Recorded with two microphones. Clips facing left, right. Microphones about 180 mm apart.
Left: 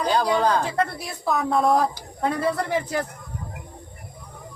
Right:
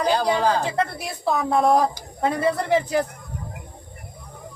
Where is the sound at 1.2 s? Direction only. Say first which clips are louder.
Right 1 dB; 20° right (ahead or behind).